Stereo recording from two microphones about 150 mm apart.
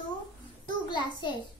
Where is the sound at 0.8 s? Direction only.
30° left (ahead or behind).